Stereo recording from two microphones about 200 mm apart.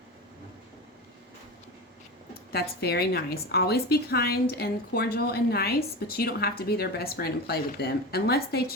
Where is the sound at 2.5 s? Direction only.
55° left (ahead or behind).